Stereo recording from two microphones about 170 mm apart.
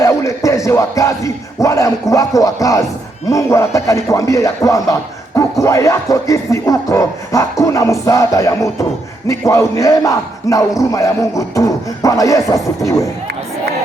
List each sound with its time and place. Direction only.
0.0 s speech: 15° left (ahead or behind)